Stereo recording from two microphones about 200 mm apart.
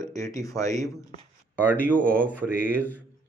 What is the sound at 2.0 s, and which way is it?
Speech, 10° right (ahead or behind).